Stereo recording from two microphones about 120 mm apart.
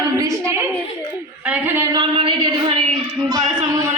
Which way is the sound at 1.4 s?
10° right (ahead or behind).